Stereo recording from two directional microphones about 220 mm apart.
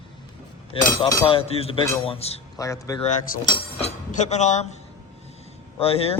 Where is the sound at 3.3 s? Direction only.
40° left (ahead or behind).